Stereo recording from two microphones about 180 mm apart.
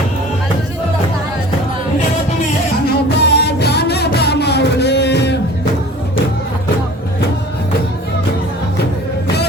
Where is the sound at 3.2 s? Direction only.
70° left (ahead or behind).